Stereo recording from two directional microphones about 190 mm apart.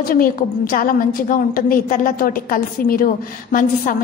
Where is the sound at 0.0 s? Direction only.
50° left (ahead or behind).